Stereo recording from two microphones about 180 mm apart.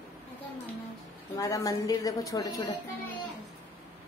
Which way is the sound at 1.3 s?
20° left (ahead or behind).